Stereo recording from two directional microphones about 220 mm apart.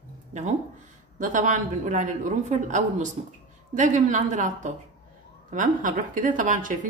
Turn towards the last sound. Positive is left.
turn(degrees=-35)  # may be behind; listen again after turning